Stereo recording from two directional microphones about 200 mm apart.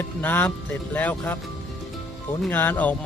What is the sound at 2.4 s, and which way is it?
Speech, 10° left (ahead or behind).